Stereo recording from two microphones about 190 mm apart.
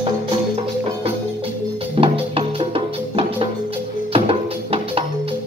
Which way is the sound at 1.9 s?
30° right (ahead or behind).